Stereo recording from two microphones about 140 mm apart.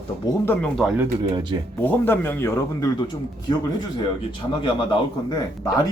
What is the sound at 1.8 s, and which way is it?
A man's voice, 15° left (ahead or behind).